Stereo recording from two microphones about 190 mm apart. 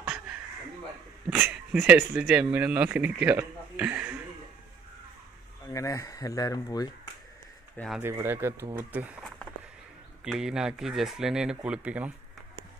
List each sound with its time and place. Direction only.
0.0 s a sound: 5° right (ahead or behind)
1.3 s speech: 5° right (ahead or behind)
5.7 s speech: 15° left (ahead or behind)
7.7 s speech: 5° left (ahead or behind)
8.0 s speech: 10° right (ahead or behind)